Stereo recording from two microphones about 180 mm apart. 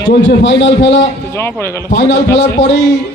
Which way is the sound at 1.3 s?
15° left (ahead or behind).